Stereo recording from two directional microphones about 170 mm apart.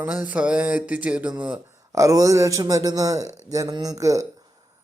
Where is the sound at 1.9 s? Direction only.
20° right (ahead or behind).